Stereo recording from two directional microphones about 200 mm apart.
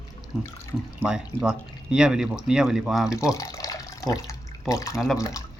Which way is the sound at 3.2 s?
15° left (ahead or behind).